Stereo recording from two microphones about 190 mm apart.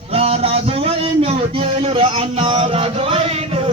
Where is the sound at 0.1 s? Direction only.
30° right (ahead or behind).